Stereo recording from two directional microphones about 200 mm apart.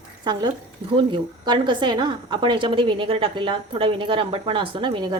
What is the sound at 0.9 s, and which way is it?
A woman's voice, 25° right (ahead or behind).